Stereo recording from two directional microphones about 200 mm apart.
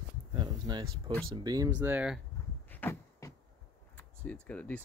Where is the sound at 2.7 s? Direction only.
10° left (ahead or behind).